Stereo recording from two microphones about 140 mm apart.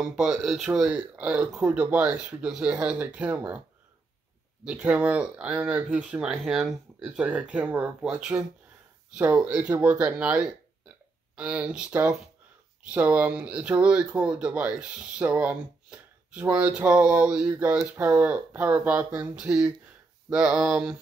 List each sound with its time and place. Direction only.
0.0 s speech: 5° right (ahead or behind)
4.6 s speech: 10° right (ahead or behind)